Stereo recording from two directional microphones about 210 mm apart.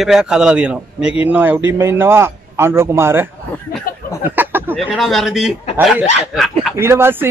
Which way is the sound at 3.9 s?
40° left (ahead or behind).